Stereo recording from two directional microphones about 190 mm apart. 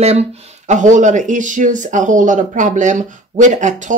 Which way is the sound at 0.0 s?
35° right (ahead or behind).